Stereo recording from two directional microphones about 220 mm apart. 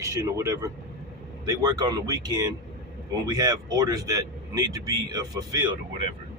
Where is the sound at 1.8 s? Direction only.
15° right (ahead or behind).